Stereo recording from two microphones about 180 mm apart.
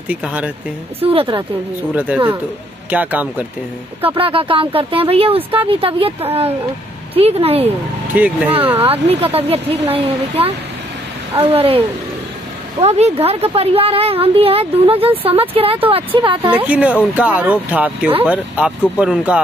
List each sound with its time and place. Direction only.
0.1 s speech: 5° right (ahead or behind)
1.0 s a woman's voice: 30° right (ahead or behind)
2.0 s speech: 10° right (ahead or behind)
4.1 s a woman's voice: 30° right (ahead or behind)
7.2 s a woman's voice: 35° right (ahead or behind)
7.6 s speech: 10° right (ahead or behind)
8.7 s a woman's voice: 35° right (ahead or behind)
12.8 s a woman's voice: 35° right (ahead or behind)
16.4 s speech: 10° right (ahead or behind)